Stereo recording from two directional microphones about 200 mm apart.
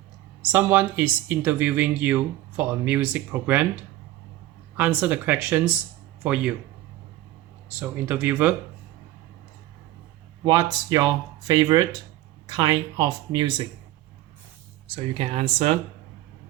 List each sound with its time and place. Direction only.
0.4 s speech: 10° right (ahead or behind)
4.8 s speech: 10° right (ahead or behind)
7.7 s speech: 10° right (ahead or behind)
10.4 s speech: 20° right (ahead or behind)
14.9 s speech: 35° right (ahead or behind)